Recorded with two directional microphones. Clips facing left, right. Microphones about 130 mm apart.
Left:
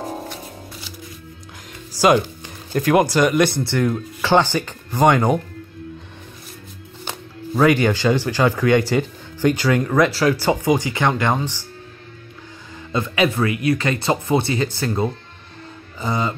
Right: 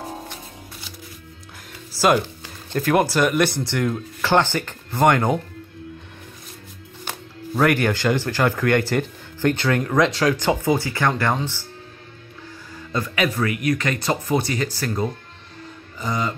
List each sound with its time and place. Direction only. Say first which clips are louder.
1.9 s music: left 3 dB; 10° left (ahead or behind)
2.7 s speech: left 3 dB; 5° left (ahead or behind)
3.1 s speech: left 3 dB; 5° right (ahead or behind)
3.8 s speech: left 2 dB; 10° left (ahead or behind)
7.1 s speech: left 2 dB; 15° left (ahead or behind)
12.9 s speech: left 3 dB; 25° left (ahead or behind)